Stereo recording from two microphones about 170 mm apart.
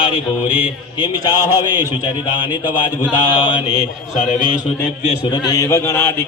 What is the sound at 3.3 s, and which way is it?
Mantra, 30° left (ahead or behind).